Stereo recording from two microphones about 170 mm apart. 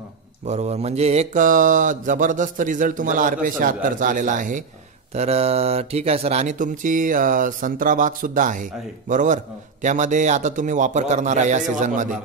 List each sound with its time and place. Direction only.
0.5 s mantra: 40° right (ahead or behind)
5.1 s mantra: 40° right (ahead or behind)